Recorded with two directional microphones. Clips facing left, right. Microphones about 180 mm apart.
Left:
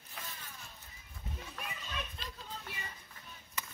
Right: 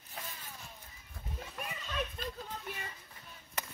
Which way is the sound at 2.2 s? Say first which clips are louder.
Right 7 dB; 50° right (ahead or behind).